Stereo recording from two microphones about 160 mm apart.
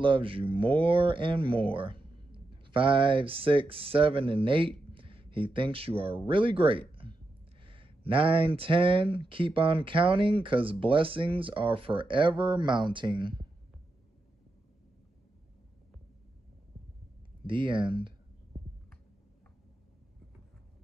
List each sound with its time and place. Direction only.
0.0 s speech: 35° right (ahead or behind)
17.5 s speech: 30° right (ahead or behind)